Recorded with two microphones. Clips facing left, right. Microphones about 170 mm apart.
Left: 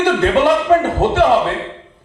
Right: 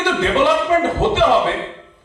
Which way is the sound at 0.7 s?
55° left (ahead or behind).